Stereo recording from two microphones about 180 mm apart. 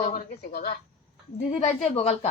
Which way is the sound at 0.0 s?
50° left (ahead or behind).